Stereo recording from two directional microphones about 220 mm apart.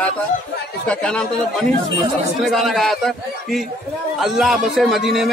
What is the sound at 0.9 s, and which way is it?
A man's voice, 5° left (ahead or behind).